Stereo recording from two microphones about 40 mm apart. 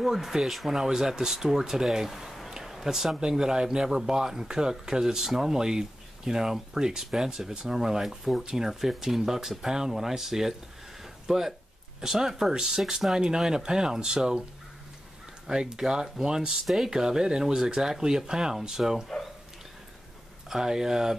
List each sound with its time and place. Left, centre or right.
0.0 s speech: centre
2.5 s a sound: centre
3.2 s speech: centre
15.4 s speech: centre
20.4 s speech: centre